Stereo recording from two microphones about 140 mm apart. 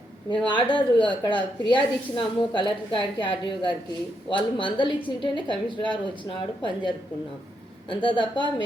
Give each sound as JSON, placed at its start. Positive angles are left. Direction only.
{"t": 0.3, "sound": "a woman's voice", "side_deg": 35}